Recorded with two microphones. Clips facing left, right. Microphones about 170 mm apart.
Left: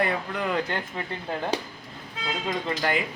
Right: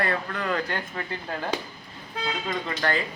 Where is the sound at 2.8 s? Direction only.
15° left (ahead or behind).